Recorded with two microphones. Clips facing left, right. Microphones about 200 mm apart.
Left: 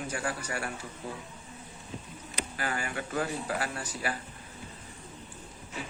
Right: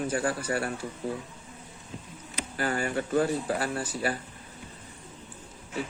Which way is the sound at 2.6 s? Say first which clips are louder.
Right 6 dB; 35° right (ahead or behind).